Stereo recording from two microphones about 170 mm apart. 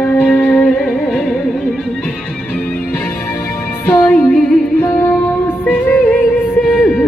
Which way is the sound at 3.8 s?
10° left (ahead or behind).